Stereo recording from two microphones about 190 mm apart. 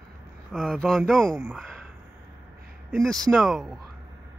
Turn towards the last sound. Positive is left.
turn(degrees=0)  # may be behind; listen again after turning